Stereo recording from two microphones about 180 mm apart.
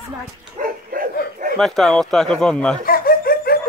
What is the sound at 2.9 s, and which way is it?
Laughter, 55° left (ahead or behind).